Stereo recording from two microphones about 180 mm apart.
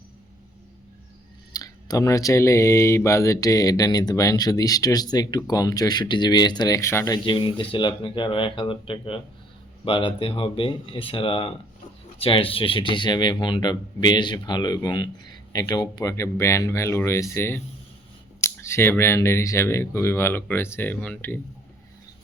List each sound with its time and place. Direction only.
1.5 s speech: 20° left (ahead or behind)